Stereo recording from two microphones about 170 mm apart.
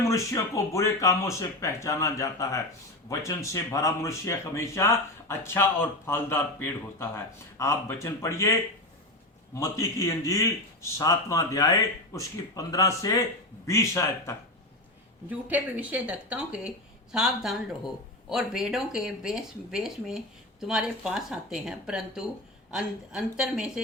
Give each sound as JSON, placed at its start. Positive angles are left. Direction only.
{"t": 0.1, "sound": "speech", "side_deg": 20}
{"t": 9.6, "sound": "speech", "side_deg": 15}
{"t": 15.3, "sound": "speech", "side_deg": -10}